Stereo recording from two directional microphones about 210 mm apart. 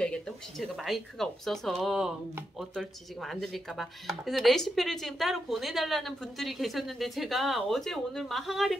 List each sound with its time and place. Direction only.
0.0 s speech: 5° left (ahead or behind)